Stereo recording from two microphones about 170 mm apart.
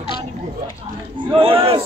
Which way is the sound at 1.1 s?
30° right (ahead or behind).